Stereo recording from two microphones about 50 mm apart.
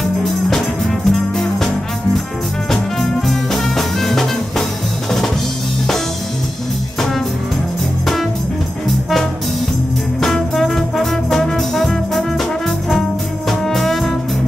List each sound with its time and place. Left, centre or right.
0.0 s music: centre
2.7 s music: centre
10.2 s brass instrument: centre
13.5 s music: centre